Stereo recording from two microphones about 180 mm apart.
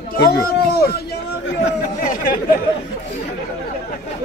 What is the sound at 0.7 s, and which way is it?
Speech, 60° left (ahead or behind).